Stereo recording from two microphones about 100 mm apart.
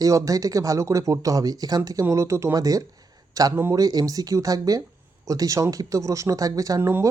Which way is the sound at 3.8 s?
35° right (ahead or behind).